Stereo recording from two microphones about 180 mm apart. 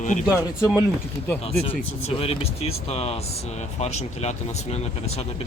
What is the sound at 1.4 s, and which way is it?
Speech, 30° left (ahead or behind).